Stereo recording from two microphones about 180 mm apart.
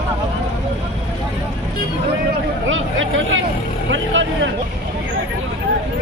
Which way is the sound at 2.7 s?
90° right.